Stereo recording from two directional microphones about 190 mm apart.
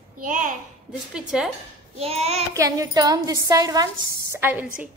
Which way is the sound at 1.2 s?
Centre (ahead or behind).